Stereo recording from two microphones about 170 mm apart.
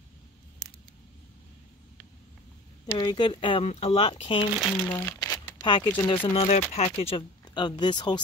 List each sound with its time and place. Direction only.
2.9 s speech: 25° left (ahead or behind)
4.9 s speech: 15° left (ahead or behind)